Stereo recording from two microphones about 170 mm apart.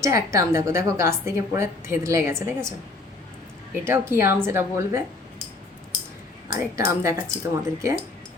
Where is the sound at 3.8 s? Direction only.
15° right (ahead or behind).